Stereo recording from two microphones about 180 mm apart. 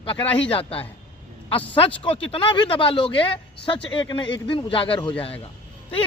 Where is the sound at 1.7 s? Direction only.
30° left (ahead or behind).